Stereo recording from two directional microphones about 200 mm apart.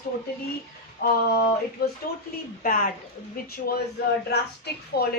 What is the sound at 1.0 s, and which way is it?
Speech, 55° left (ahead or behind).